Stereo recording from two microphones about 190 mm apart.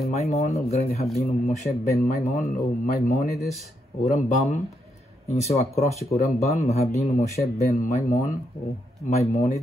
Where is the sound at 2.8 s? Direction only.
50° left (ahead or behind).